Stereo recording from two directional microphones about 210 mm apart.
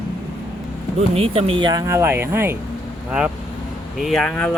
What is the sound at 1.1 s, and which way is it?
Speech, 30° right (ahead or behind).